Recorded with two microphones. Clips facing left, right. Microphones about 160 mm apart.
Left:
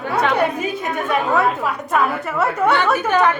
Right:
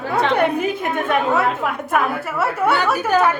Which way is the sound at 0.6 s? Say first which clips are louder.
Right 2 dB; 55° right (ahead or behind).